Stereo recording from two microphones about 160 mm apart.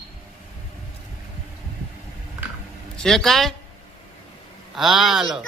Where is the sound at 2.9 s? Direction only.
5° left (ahead or behind).